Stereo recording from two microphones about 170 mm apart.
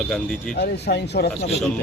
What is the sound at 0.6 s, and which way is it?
Speech, 80° left.